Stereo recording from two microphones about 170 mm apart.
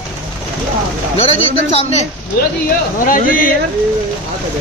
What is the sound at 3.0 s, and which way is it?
Speech, 55° left (ahead or behind).